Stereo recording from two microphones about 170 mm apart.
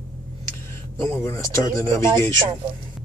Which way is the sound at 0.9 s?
15° left (ahead or behind).